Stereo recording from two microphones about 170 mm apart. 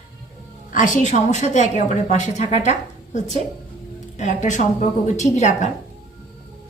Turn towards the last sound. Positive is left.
turn(degrees=45)  # may be behind; listen again after turning